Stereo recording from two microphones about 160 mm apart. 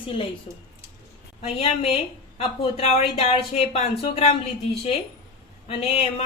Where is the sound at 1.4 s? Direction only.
40° left (ahead or behind).